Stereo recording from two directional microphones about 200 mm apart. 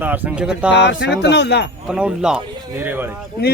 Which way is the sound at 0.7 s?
60° left (ahead or behind).